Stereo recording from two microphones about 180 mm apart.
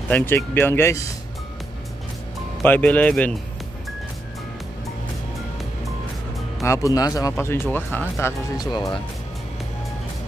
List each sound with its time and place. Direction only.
0.1 s speech: 10° left (ahead or behind)
2.6 s speech: 10° left (ahead or behind)
6.6 s speech: 15° left (ahead or behind)